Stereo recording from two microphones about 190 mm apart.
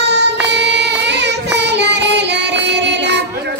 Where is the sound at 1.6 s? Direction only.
65° right (ahead or behind).